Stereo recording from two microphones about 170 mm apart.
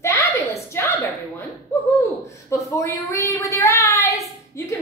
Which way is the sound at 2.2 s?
15° left (ahead or behind).